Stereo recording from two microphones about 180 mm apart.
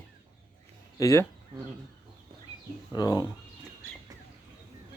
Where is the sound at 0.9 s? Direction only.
15° left (ahead or behind).